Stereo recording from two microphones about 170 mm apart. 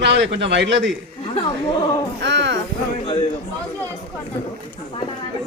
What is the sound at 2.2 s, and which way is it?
Speech, 90° right.